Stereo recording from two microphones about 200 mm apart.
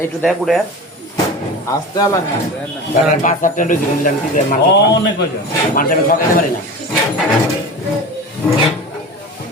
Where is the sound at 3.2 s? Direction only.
40° left (ahead or behind).